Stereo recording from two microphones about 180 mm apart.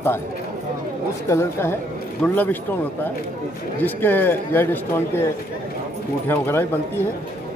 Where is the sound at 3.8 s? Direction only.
10° left (ahead or behind).